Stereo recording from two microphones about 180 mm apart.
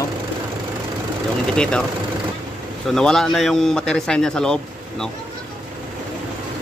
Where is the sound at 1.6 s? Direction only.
5° left (ahead or behind).